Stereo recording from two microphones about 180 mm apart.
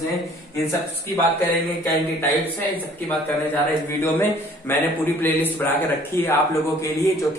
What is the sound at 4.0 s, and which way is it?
A man's voice, 10° left (ahead or behind).